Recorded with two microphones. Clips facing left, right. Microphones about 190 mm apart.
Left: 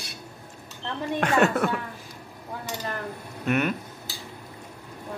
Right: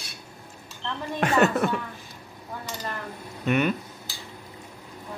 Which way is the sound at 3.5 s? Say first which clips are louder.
Right 1 dB; centre (ahead or behind).